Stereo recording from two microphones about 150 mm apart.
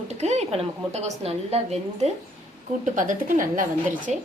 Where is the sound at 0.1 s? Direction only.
50° right (ahead or behind).